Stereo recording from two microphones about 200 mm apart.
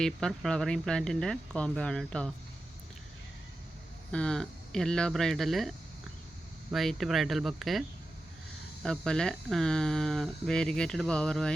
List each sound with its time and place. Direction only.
0.0 s speech: 5° left (ahead or behind)
4.1 s speech: 5° left (ahead or behind)